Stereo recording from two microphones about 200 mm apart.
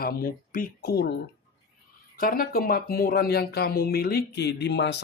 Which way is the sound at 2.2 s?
45° left (ahead or behind).